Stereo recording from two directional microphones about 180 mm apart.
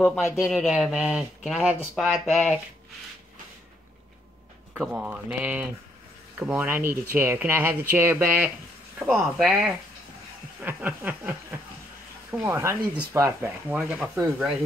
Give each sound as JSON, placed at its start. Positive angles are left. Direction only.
{"t": 0.0, "sound": "speech", "side_deg": 10}
{"t": 0.4, "sound": "speech", "side_deg": -5}
{"t": 4.7, "sound": "speech", "side_deg": -5}